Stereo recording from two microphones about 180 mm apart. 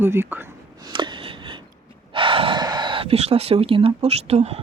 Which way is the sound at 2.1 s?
30° right (ahead or behind).